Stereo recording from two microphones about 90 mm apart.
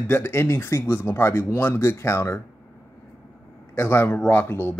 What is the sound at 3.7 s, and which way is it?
Speech, 25° left (ahead or behind).